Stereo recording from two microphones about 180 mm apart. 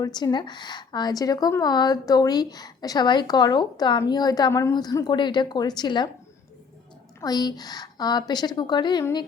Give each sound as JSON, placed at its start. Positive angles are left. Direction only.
{"t": 0.0, "sound": "speech", "side_deg": 25}
{"t": 7.2, "sound": "speech", "side_deg": 20}